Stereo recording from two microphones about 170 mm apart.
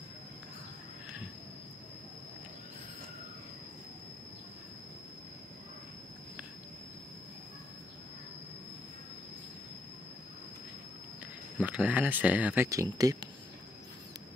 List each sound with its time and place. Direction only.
11.6 s speech: 10° right (ahead or behind)
12.6 s speech: 20° right (ahead or behind)